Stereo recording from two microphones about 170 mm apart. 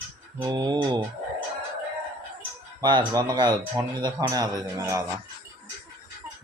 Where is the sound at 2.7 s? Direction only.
25° right (ahead or behind).